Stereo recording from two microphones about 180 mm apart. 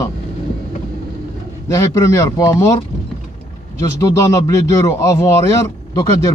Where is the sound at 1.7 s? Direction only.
20° left (ahead or behind).